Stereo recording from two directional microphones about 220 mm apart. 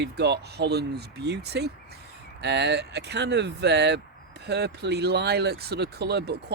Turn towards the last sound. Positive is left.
turn(degrees=-50)  # may be behind; listen again after turning